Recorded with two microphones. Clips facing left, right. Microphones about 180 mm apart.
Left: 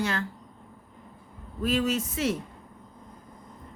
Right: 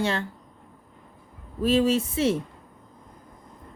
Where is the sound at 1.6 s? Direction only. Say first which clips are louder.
Right 5 dB; 30° right (ahead or behind).